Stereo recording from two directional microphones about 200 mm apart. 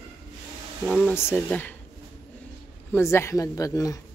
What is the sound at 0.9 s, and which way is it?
Speech, 10° left (ahead or behind).